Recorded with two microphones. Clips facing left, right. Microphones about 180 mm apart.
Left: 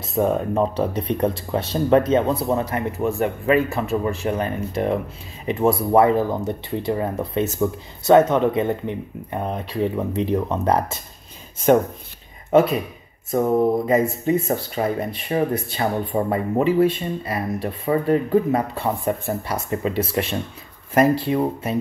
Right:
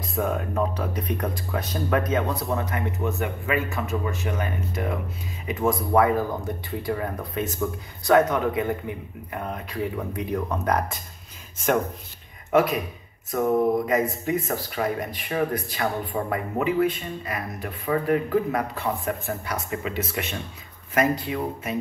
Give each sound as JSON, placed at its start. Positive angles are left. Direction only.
{"t": 0.1, "sound": "speech", "side_deg": 30}
{"t": 12.4, "sound": "speech", "side_deg": 30}